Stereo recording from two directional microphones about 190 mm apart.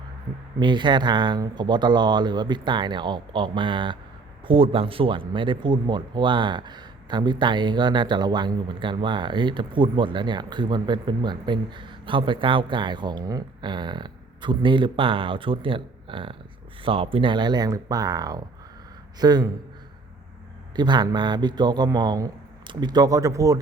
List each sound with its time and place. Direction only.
0.6 s speech: 25° right (ahead or behind)
20.7 s speech: 25° right (ahead or behind)